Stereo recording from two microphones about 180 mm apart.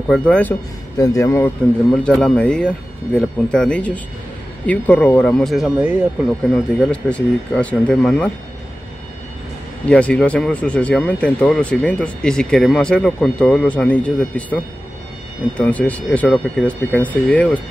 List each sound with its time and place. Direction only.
0.1 s speech: 5° left (ahead or behind)
0.9 s speech: 20° left (ahead or behind); by 6.0 s 5° right (ahead or behind)
6.5 s speech: 5° left (ahead or behind)
9.8 s speech: 5° left (ahead or behind)